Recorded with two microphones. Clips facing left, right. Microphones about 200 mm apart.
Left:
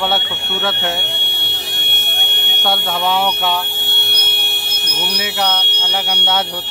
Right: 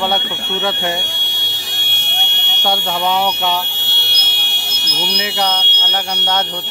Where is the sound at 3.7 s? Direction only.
55° left (ahead or behind).